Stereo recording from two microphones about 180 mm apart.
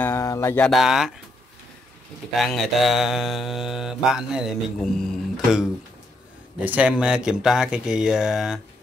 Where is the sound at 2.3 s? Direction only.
Centre (ahead or behind).